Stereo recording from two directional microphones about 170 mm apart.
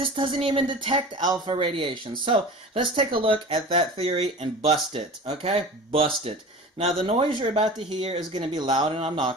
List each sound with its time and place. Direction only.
0.0 s speech: 30° right (ahead or behind)